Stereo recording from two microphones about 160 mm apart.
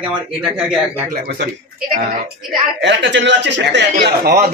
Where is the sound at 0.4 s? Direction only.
5° right (ahead or behind).